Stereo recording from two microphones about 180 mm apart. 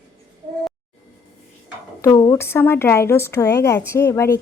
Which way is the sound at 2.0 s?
20° left (ahead or behind).